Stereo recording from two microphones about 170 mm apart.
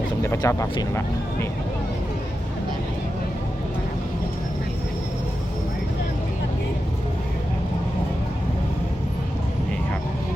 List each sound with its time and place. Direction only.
0.2 s speech: 15° left (ahead or behind)